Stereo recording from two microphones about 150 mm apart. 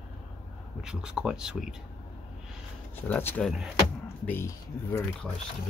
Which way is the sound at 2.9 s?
15° left (ahead or behind).